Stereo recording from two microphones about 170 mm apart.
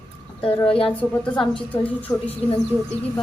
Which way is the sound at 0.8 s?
5° left (ahead or behind).